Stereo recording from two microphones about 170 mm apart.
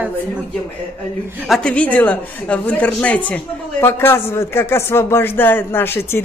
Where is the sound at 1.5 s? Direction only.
5° left (ahead or behind).